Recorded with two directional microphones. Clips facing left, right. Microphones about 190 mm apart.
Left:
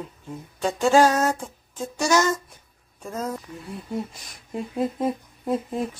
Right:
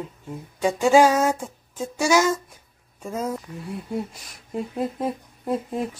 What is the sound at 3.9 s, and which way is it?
Speech, 5° right (ahead or behind).